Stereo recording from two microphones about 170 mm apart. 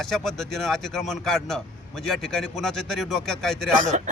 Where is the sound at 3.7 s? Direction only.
45° right (ahead or behind).